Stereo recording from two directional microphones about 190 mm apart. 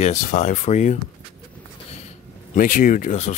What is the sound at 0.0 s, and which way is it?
Speech, 40° left (ahead or behind).